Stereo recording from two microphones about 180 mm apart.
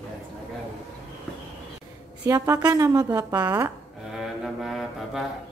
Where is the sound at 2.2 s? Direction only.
15° right (ahead or behind).